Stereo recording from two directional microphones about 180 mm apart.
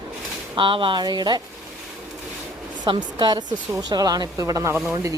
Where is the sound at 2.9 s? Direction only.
25° right (ahead or behind).